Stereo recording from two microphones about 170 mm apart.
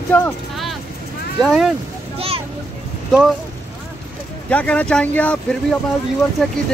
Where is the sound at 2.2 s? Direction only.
35° right (ahead or behind).